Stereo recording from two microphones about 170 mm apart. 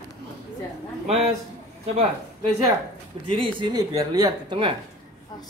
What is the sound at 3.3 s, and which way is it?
Speech, 30° right (ahead or behind).